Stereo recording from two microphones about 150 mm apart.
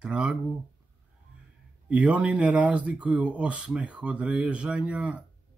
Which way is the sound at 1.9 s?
10° right (ahead or behind).